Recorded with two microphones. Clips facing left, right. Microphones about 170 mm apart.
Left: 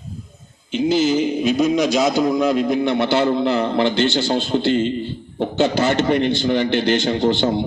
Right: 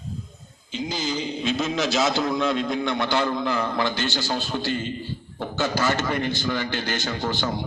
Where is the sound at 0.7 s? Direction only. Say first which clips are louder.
Left 11 dB; 20° left (ahead or behind).